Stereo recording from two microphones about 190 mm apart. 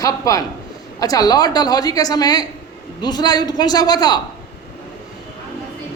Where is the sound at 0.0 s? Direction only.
20° left (ahead or behind).